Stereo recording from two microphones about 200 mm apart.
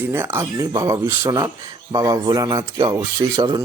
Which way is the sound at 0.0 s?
10° right (ahead or behind).